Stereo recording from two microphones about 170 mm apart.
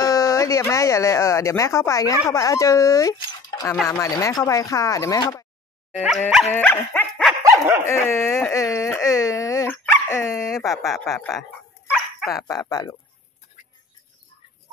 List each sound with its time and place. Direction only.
0.0 s speech: 20° left (ahead or behind)
5.9 s speech: centre (ahead or behind)
6.5 s dog: 10° left (ahead or behind)
7.8 s speech: 15° left (ahead or behind)
10.4 s speech: centre (ahead or behind)
12.4 s speech: 20° left (ahead or behind)